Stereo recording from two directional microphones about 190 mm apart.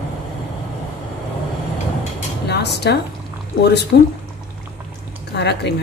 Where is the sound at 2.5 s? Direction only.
60° left (ahead or behind).